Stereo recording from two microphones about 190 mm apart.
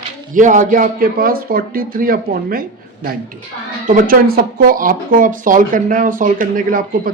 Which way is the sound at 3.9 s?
45° right (ahead or behind).